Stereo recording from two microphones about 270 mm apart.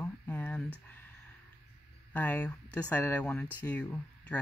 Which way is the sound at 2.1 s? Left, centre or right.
Centre.